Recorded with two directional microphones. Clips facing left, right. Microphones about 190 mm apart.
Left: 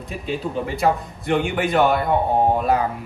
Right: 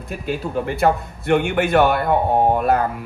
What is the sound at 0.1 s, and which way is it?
Speech, centre (ahead or behind).